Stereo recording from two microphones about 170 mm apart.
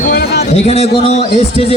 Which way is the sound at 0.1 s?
65° left (ahead or behind).